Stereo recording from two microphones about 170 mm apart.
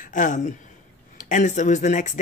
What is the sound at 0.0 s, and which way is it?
Speech, 50° left (ahead or behind).